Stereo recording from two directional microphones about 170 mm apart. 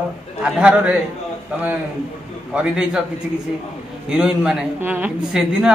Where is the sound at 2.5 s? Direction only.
5° right (ahead or behind).